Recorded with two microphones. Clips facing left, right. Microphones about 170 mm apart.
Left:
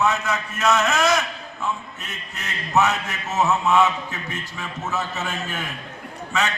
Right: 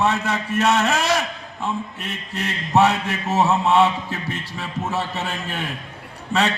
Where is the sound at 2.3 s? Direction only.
35° right (ahead or behind).